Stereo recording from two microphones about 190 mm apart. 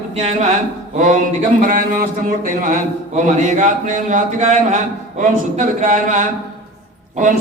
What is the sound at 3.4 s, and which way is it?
A man's voice, 40° right (ahead or behind).